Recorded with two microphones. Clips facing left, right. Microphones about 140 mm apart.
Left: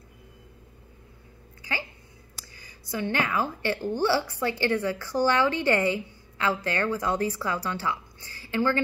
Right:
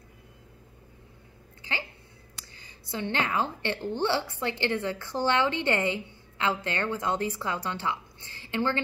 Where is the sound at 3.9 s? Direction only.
25° right (ahead or behind).